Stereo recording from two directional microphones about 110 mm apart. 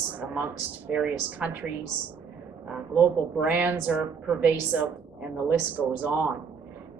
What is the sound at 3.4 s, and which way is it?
Speech, 15° right (ahead or behind).